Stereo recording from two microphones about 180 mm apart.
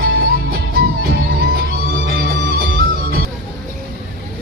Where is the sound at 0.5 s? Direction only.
55° right (ahead or behind); by 2.6 s 75° right (ahead or behind).